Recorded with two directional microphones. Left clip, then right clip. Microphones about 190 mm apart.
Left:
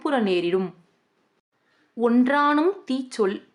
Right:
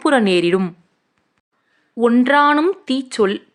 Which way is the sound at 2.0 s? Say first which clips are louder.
Right 7 dB; 15° right (ahead or behind).